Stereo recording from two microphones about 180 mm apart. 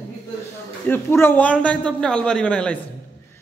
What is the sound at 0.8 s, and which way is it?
A man's voice, 15° left (ahead or behind).